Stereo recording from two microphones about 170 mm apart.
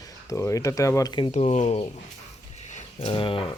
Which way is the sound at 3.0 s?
30° left (ahead or behind).